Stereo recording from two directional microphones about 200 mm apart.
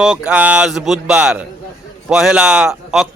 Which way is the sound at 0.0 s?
5° right (ahead or behind).